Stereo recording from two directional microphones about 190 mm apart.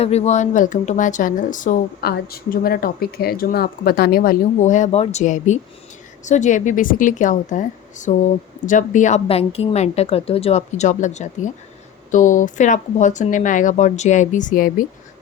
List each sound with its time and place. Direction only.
0.0 s a woman's voice: 35° left (ahead or behind)